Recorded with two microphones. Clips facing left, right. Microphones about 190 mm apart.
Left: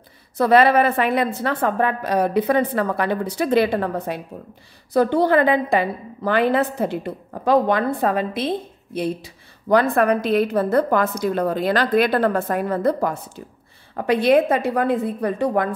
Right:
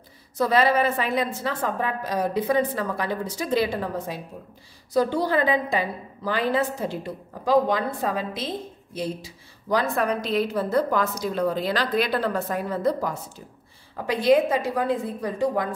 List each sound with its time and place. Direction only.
0.4 s a woman's voice: 60° left (ahead or behind)